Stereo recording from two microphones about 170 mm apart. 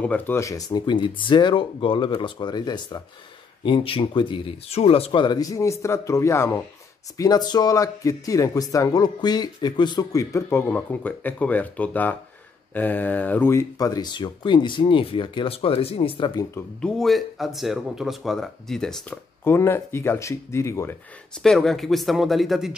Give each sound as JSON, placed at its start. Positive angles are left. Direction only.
{"t": 0.0, "sound": "speech", "side_deg": 10}
{"t": 16.8, "sound": "speech", "side_deg": 0}
{"t": 21.4, "sound": "speech", "side_deg": 0}